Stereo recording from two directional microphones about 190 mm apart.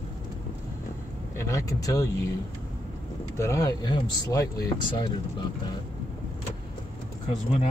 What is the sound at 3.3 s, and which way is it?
Speech, 15° left (ahead or behind).